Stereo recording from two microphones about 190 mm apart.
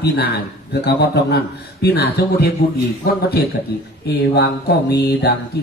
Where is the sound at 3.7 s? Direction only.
55° left (ahead or behind).